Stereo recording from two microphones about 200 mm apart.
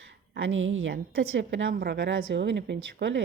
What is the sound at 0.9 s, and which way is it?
Speech, 55° right (ahead or behind).